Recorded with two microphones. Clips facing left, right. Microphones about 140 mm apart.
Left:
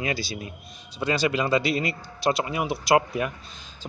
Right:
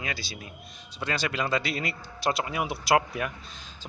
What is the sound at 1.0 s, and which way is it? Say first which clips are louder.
Speech: left 6 dB; 5° left (ahead or behind).